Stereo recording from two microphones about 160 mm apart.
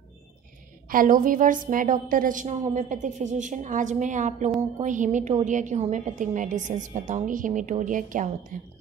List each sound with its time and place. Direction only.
0.8 s a woman's voice: 60° right (ahead or behind)